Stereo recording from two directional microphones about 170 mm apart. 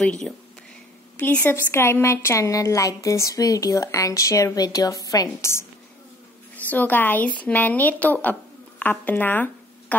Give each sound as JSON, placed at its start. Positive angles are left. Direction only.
{"t": 0.0, "sound": "a woman's voice", "side_deg": 5}